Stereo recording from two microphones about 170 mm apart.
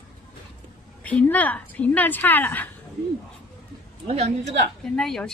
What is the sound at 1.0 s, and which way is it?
A woman's voice, 10° left (ahead or behind).